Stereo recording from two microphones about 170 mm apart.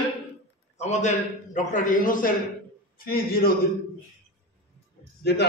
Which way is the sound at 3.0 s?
65° left (ahead or behind).